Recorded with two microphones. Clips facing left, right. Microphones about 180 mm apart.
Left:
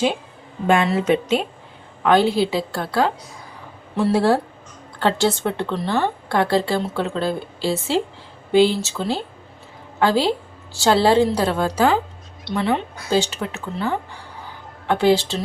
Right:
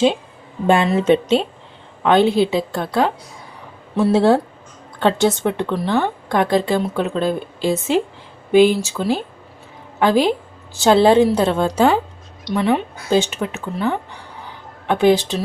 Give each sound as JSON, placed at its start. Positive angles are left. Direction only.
{"t": 0.9, "sound": "a woman's voice", "side_deg": -25}